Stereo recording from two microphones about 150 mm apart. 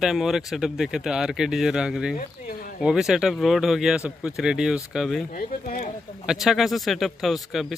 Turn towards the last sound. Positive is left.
turn(degrees=0)  # may be behind; listen again after turning